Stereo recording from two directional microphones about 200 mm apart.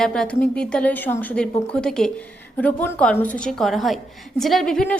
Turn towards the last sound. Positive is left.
turn(degrees=5)  # may be behind; listen again after turning